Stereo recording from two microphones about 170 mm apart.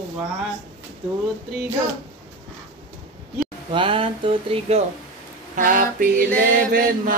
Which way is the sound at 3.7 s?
30° right (ahead or behind).